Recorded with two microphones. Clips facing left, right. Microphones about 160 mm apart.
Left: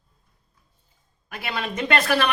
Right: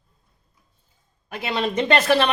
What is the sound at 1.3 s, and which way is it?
A woman's voice, 25° right (ahead or behind).